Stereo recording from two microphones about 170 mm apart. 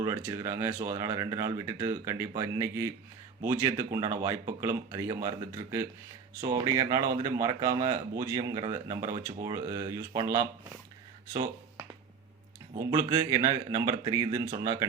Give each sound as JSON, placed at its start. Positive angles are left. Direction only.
{"t": 0.0, "sound": "speech", "side_deg": -20}
{"t": 6.4, "sound": "speech", "side_deg": -20}
{"t": 12.7, "sound": "speech", "side_deg": -25}